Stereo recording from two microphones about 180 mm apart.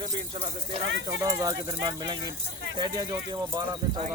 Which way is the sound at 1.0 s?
20° right (ahead or behind).